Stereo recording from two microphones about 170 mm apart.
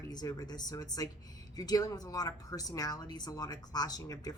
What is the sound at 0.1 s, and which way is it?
Speech, 25° left (ahead or behind).